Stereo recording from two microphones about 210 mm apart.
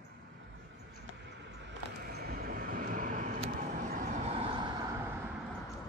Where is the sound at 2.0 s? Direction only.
45° right (ahead or behind); by 5.1 s 15° right (ahead or behind).